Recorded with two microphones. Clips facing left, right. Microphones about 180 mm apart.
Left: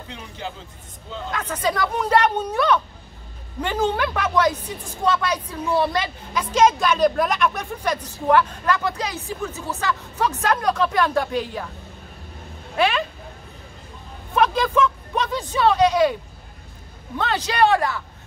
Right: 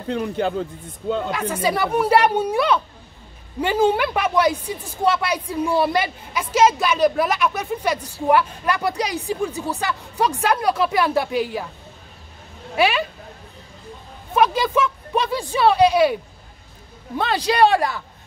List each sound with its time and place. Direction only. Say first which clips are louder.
0.1 s speech: right 14 dB; 55° right (ahead or behind)
1.3 s a woman's voice: right 2 dB; 10° right (ahead or behind)
12.7 s speech: right 2 dB; 10° right (ahead or behind)
14.3 s a woman's voice: right 1 dB; 5° right (ahead or behind)
17.2 s a woman's voice: right 3 dB; 10° right (ahead or behind)